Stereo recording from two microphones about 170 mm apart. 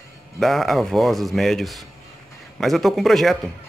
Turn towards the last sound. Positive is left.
turn(degrees=0)  # may be behind; listen again after turning